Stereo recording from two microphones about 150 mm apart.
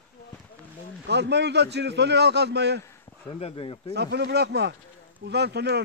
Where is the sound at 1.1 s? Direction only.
90° right.